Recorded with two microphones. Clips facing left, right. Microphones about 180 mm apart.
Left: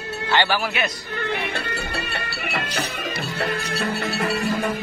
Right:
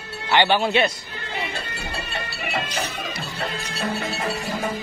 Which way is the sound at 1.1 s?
65° left (ahead or behind).